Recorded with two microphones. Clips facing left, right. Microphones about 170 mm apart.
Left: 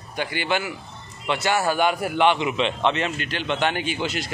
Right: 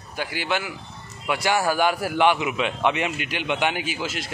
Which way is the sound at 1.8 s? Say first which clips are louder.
Even; 20° left (ahead or behind).